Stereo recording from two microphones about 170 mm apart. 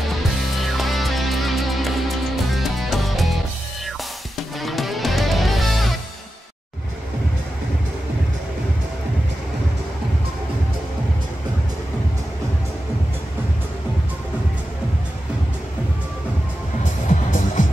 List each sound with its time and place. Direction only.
0.6 s music: centre (ahead or behind)
4.6 s music: centre (ahead or behind)
17.1 s music: 50° left (ahead or behind)